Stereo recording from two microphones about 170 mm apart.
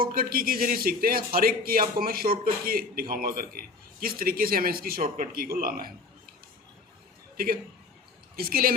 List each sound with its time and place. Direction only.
0.0 s a man's voice: 60° right (ahead or behind)
7.3 s a man's voice: 60° right (ahead or behind)